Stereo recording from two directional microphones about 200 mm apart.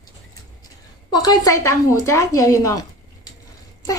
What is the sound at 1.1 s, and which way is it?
A woman's voice, 20° left (ahead or behind).